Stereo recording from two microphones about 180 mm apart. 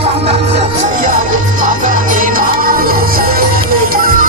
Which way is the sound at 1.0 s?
50° right (ahead or behind).